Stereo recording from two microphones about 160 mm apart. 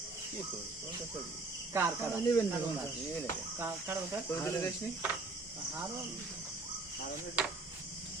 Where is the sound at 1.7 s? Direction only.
15° right (ahead or behind).